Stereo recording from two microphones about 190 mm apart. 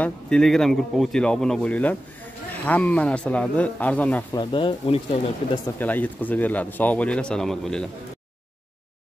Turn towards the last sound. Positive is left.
turn(degrees=0)  # may be behind; listen again after turning